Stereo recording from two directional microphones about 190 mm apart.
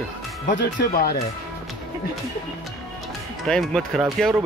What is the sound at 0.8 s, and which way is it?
Speech, 50° left (ahead or behind).